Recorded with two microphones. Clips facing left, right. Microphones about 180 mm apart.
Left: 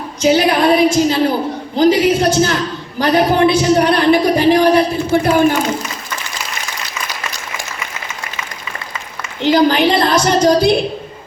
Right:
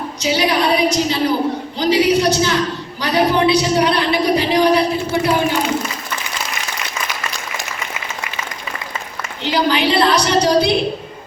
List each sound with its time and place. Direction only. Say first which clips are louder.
0.2 s a woman's voice: left 5 dB; 50° left (ahead or behind)
9.4 s a woman's voice: left 5 dB; 45° left (ahead or behind)